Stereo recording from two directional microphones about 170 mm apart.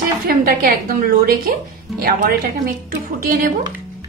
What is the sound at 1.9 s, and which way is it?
Speech, 60° right (ahead or behind).